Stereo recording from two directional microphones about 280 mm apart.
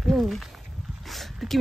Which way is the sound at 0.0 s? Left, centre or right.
Centre.